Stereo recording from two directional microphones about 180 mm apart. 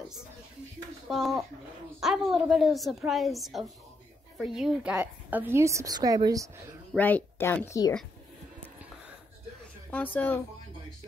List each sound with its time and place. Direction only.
1.0 s a woman's voice: centre (ahead or behind); by 6.5 s 20° right (ahead or behind)
7.0 s speech: 10° left (ahead or behind)
9.8 s speech: 10° left (ahead or behind)